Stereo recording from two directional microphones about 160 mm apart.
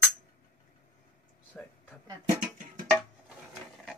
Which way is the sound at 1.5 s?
10° left (ahead or behind).